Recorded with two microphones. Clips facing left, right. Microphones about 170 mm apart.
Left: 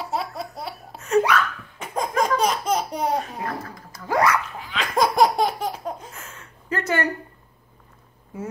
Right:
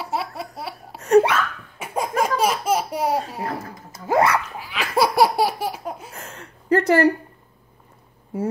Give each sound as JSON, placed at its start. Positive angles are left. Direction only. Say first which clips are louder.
{"t": 0.0, "sound": "laughter", "louder": "even", "side_deg": 0}
{"t": 0.9, "sound": "laughter", "louder": "right 4 dB", "side_deg": -35}
{"t": 1.8, "sound": "laughter", "louder": "right 1 dB", "side_deg": -10}
{"t": 3.2, "sound": "a sound", "louder": "right 2 dB", "side_deg": -30}
{"t": 4.6, "sound": "laughter", "louder": "right 1 dB", "side_deg": -5}
{"t": 6.1, "sound": "a sound", "louder": "right 4 dB", "side_deg": -35}